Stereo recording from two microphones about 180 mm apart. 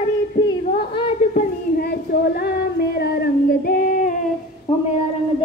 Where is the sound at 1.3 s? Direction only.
60° left (ahead or behind).